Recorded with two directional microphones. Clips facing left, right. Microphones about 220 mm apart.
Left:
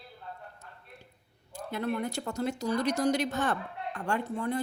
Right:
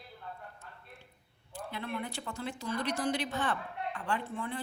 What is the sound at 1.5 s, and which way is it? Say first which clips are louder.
A woman's voice: left 6 dB; 45° left (ahead or behind).